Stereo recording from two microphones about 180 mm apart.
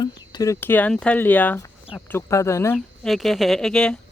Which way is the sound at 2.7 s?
Centre (ahead or behind).